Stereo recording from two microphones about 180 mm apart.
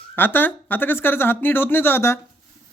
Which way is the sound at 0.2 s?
10° left (ahead or behind).